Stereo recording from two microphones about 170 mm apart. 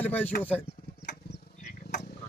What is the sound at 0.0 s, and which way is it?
Speech, 10° left (ahead or behind).